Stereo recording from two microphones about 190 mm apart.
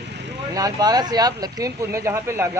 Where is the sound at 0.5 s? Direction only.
20° right (ahead or behind).